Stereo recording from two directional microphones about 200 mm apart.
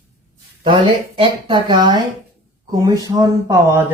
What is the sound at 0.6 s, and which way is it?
Speech, 25° right (ahead or behind).